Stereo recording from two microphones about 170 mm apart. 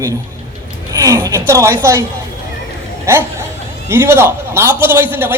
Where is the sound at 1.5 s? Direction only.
15° right (ahead or behind).